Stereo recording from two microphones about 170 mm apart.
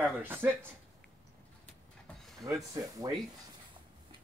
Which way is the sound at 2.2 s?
Centre (ahead or behind).